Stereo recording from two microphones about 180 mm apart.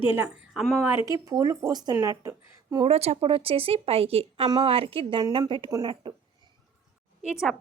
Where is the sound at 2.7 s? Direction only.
30° right (ahead or behind).